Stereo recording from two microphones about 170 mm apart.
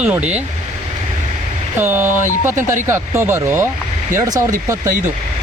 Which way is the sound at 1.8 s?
15° right (ahead or behind).